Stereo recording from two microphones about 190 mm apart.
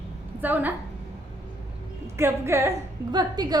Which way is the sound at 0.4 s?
10° right (ahead or behind).